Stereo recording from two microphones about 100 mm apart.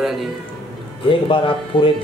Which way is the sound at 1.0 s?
60° left (ahead or behind).